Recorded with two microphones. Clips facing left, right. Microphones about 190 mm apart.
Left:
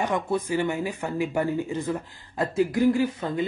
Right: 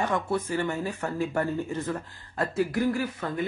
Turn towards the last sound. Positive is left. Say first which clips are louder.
# left 5 dB
turn(degrees=20)  # may be behind; listen again after turning